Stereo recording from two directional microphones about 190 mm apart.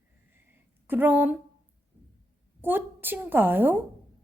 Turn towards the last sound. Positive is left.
turn(degrees=-10)  # may be behind; listen again after turning